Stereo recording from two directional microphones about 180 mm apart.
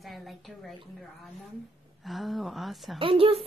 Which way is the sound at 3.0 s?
30° right (ahead or behind).